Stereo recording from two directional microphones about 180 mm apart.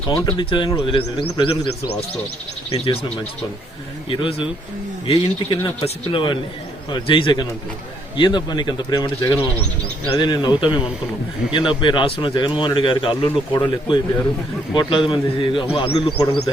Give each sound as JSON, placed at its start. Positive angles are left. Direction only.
{"t": 0.3, "sound": "a man's voice", "side_deg": 25}
{"t": 4.1, "sound": "a man's voice", "side_deg": 30}
{"t": 11.5, "sound": "a man's voice", "side_deg": 25}